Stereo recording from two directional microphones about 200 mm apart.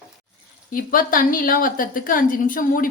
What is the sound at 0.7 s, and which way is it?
A woman's voice, 45° left (ahead or behind).